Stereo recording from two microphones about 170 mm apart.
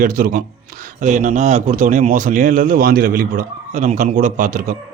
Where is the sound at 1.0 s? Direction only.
45° right (ahead or behind).